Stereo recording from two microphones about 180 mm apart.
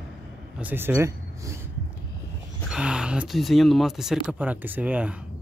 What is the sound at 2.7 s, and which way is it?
Speech, 5° right (ahead or behind).